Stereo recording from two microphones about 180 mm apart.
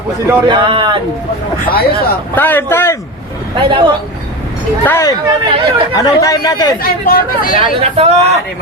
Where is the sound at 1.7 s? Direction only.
55° left (ahead or behind).